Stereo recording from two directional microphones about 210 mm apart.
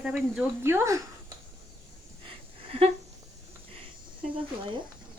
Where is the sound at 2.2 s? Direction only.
30° right (ahead or behind).